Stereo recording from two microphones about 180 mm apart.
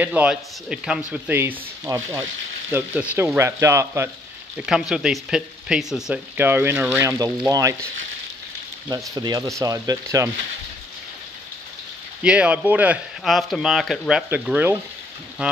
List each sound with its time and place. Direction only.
0.0 s speech: 10° right (ahead or behind)
4.6 s speech: 5° right (ahead or behind); by 7.9 s 20° right (ahead or behind)
8.9 s speech: 20° right (ahead or behind)
12.2 s speech: 5° right (ahead or behind)